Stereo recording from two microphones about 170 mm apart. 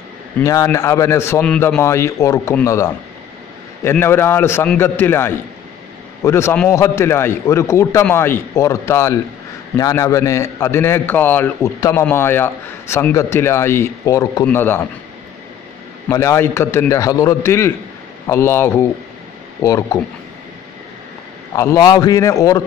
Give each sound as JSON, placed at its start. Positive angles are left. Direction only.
{"t": 0.4, "sound": "a man's voice", "side_deg": 20}
{"t": 16.1, "sound": "a man's voice", "side_deg": 15}
{"t": 21.5, "sound": "a man's voice", "side_deg": 20}